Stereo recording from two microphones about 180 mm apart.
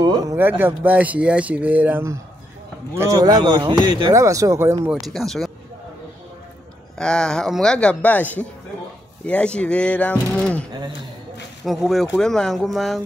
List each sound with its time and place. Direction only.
0.0 s speech: 20° right (ahead or behind)
5.0 s speech: centre (ahead or behind)
7.0 s speech: 5° left (ahead or behind)
11.6 s speech: centre (ahead or behind)